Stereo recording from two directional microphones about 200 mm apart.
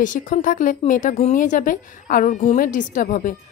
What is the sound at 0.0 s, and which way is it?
A woman's voice, 40° left (ahead or behind).